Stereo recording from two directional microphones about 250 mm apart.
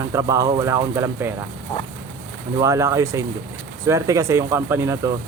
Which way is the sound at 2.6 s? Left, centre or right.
Centre.